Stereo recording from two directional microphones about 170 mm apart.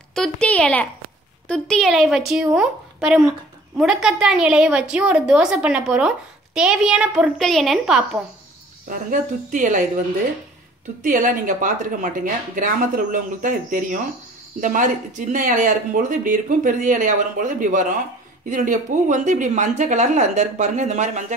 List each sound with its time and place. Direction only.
0.1 s a woman's voice: 5° left (ahead or behind)
8.8 s speech: 50° right (ahead or behind)
11.0 s speech: 50° right (ahead or behind)